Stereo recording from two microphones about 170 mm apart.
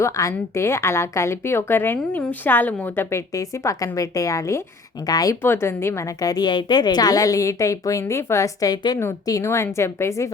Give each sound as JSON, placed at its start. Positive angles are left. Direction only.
{"t": 0.0, "sound": "a woman's voice", "side_deg": 20}